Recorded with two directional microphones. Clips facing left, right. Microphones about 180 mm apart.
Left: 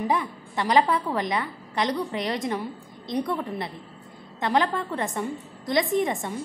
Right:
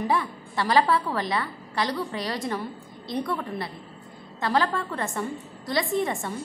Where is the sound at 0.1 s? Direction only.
20° left (ahead or behind).